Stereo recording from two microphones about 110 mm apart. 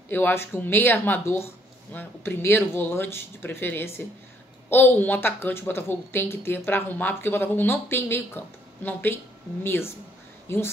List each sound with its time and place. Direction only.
0.1 s speech: 20° left (ahead or behind)